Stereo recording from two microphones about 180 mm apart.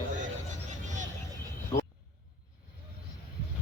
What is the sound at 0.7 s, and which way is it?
Vehicle, 45° right (ahead or behind).